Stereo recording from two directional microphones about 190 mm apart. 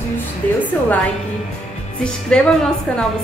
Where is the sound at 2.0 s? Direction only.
5° left (ahead or behind).